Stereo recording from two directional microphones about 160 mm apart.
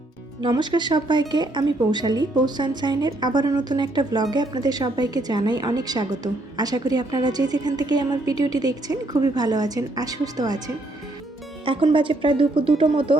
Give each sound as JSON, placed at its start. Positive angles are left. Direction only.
{"t": 0.4, "sound": "a woman's voice", "side_deg": -25}
{"t": 11.6, "sound": "speech", "side_deg": -35}